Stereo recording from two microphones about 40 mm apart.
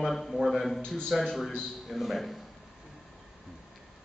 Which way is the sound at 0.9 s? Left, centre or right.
Centre.